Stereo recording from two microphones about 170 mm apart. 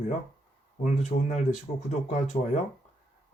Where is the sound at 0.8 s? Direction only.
50° left (ahead or behind).